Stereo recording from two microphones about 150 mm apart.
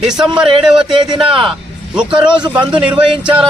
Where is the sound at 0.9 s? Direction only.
30° right (ahead or behind).